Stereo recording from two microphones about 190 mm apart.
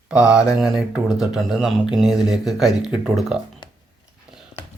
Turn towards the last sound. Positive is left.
turn(degrees=0)  # may be behind; listen again after turning